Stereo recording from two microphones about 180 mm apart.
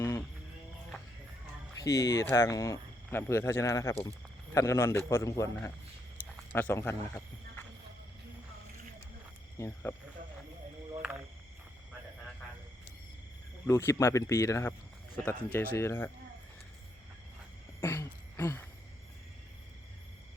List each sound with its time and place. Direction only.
0.0 s music: 15° left (ahead or behind)
1.8 s speech: 20° left (ahead or behind)
9.6 s speech: 15° left (ahead or behind)
13.7 s speech: 15° left (ahead or behind)
17.7 s a sound: 15° left (ahead or behind)